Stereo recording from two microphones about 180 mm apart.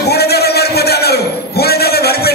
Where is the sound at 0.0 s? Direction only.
65° left (ahead or behind).